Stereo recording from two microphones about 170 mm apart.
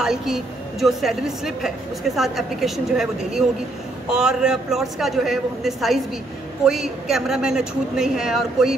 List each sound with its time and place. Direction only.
0.0 s a woman's voice: 5° right (ahead or behind)